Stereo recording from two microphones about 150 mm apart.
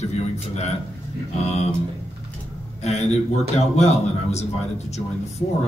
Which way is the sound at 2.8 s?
45° left (ahead or behind).